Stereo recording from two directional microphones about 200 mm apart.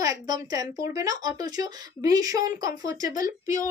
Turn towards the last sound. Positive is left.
turn(degrees=-15)  # may be behind; listen again after turning